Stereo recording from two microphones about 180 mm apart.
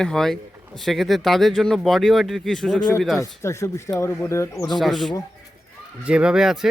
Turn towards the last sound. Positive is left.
turn(degrees=0)  # may be behind; listen again after turning